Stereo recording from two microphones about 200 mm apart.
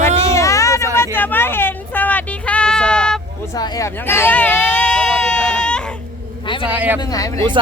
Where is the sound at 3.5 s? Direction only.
15° left (ahead or behind).